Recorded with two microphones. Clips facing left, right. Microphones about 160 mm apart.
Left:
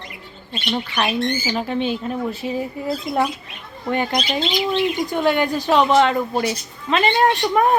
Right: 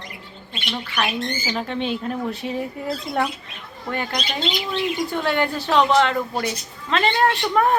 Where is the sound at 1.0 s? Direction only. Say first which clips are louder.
Left 1 dB; 30° left (ahead or behind).